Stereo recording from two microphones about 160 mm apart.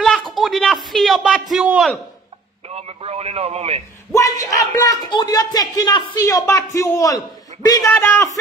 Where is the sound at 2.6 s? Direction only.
40° right (ahead or behind).